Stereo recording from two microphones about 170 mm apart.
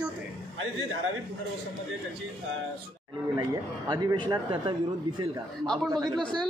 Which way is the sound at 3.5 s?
20° right (ahead or behind).